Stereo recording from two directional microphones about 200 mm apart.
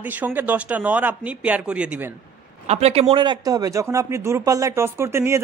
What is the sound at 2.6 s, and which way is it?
Speech, 30° right (ahead or behind).